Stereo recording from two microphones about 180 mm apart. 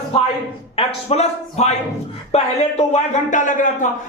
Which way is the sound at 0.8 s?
35° left (ahead or behind).